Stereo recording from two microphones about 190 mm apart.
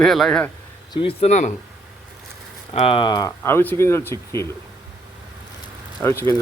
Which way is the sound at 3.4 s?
10° left (ahead or behind).